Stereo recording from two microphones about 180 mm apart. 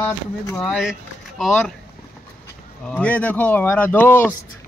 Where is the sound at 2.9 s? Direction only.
10° left (ahead or behind).